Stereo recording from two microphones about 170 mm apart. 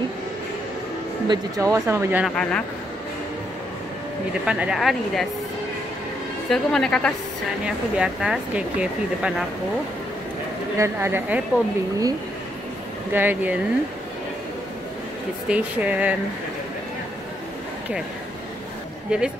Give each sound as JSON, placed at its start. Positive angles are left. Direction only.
{"t": 1.2, "sound": "speech", "side_deg": -20}
{"t": 2.2, "sound": "speech", "side_deg": 5}
{"t": 4.5, "sound": "speech", "side_deg": -5}
{"t": 6.5, "sound": "speech", "side_deg": 5}
{"t": 10.8, "sound": "speech", "side_deg": -15}
{"t": 13.1, "sound": "speech", "side_deg": -10}
{"t": 15.4, "sound": "speech", "side_deg": -10}
{"t": 19.0, "sound": "speech", "side_deg": -5}